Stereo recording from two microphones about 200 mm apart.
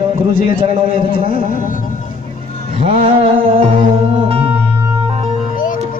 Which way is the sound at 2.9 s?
30° right (ahead or behind).